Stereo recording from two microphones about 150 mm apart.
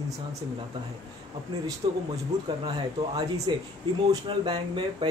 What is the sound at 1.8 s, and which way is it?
Speech, 30° right (ahead or behind).